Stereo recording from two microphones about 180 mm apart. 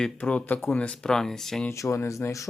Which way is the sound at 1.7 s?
15° left (ahead or behind).